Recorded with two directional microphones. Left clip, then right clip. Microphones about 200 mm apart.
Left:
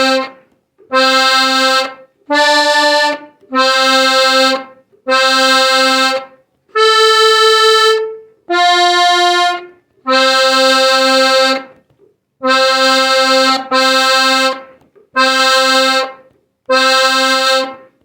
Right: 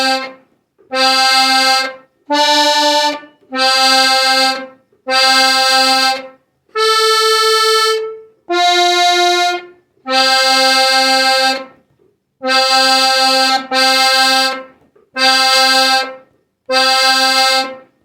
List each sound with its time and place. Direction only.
0.0 s accordion: 35° left (ahead or behind)
6.7 s music: 35° left (ahead or behind)
8.4 s accordion: 30° left (ahead or behind)